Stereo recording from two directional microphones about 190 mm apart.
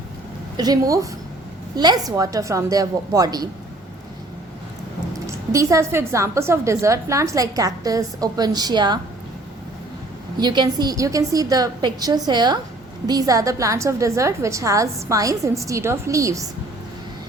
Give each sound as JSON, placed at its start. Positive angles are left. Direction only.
{"t": 0.5, "sound": "a woman's voice", "side_deg": -20}
{"t": 5.2, "sound": "a woman's voice", "side_deg": -15}
{"t": 10.4, "sound": "a woman's voice", "side_deg": -25}